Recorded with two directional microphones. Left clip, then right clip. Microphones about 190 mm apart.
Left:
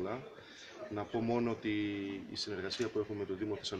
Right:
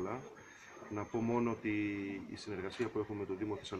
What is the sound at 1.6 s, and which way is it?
Speech, 55° left (ahead or behind).